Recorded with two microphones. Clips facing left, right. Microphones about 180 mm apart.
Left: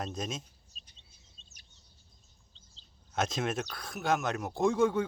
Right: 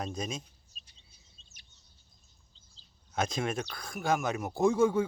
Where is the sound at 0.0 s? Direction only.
Centre (ahead or behind).